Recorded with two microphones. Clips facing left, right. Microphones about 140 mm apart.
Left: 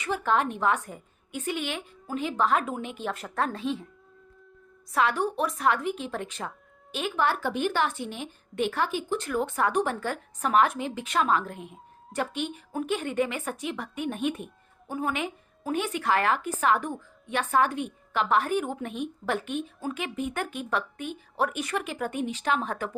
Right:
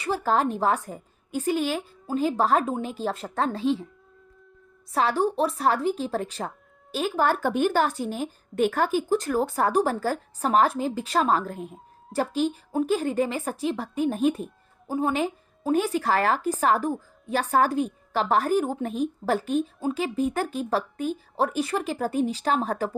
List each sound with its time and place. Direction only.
0.0 s a woman's voice: 35° right (ahead or behind)
4.9 s a woman's voice: 30° right (ahead or behind)